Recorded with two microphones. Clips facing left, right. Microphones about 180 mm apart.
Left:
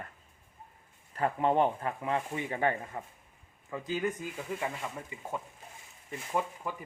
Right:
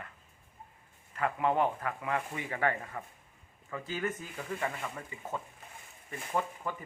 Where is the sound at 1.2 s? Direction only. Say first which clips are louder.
Left 2 dB; 35° left (ahead or behind).